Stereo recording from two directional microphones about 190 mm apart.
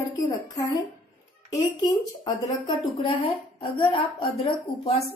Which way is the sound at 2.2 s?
25° left (ahead or behind).